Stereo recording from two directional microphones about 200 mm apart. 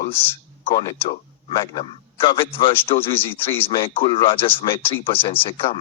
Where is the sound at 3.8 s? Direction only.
25° left (ahead or behind).